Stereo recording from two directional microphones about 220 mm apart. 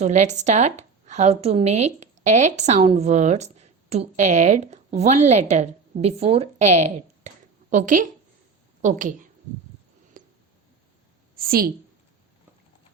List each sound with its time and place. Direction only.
0.0 s a woman's voice: 30° right (ahead or behind)
10.2 s a sound: 40° right (ahead or behind)
11.3 s a woman's voice: 40° right (ahead or behind)